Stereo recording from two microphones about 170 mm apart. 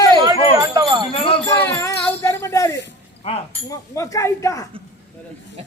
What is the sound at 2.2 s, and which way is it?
Speech, 15° left (ahead or behind).